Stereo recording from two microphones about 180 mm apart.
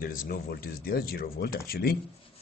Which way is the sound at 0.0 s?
50° left (ahead or behind).